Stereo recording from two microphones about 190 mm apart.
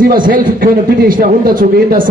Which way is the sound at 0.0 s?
50° right (ahead or behind).